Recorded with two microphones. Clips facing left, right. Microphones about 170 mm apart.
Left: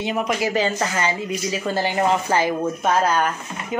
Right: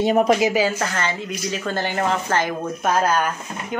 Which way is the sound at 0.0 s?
40° right (ahead or behind).